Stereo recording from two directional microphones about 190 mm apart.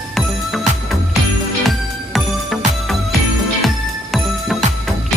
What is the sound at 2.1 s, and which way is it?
Music, centre (ahead or behind).